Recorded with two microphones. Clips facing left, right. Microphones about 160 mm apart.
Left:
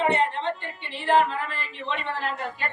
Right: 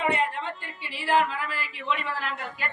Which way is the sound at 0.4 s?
5° right (ahead or behind).